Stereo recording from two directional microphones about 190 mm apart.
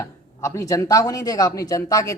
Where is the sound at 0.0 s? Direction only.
15° left (ahead or behind).